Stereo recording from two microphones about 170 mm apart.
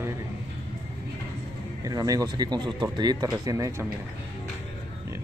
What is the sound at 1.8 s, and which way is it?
Speech, 20° right (ahead or behind).